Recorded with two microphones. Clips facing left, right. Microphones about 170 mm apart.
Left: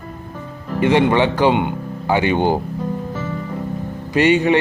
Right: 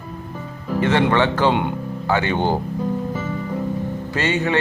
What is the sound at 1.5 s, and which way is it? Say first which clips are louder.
Speech: left 2 dB; centre (ahead or behind).